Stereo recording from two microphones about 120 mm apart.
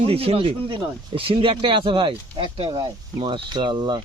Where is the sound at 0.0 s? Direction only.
55° right (ahead or behind).